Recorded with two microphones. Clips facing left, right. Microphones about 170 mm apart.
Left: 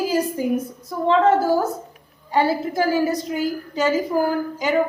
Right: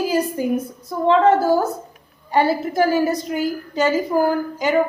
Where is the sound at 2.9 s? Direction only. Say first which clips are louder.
Right 1 dB; 60° right (ahead or behind).